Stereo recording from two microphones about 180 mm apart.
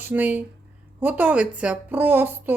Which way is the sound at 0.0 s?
10° right (ahead or behind).